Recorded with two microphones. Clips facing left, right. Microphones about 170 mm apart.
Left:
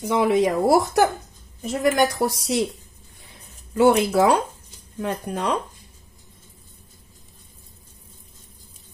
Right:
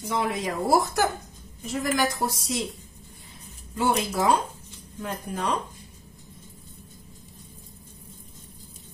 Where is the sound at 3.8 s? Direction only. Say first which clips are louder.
Left 8 dB; 65° left (ahead or behind).